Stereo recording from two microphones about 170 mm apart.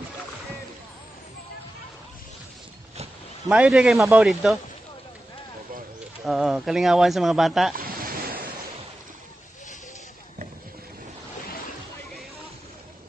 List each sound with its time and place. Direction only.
3.4 s speech: 5° right (ahead or behind)
6.2 s speech: centre (ahead or behind)
7.7 s a sound: 60° right (ahead or behind)